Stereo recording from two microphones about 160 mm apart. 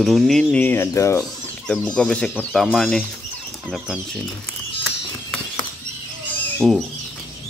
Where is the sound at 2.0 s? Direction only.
5° left (ahead or behind).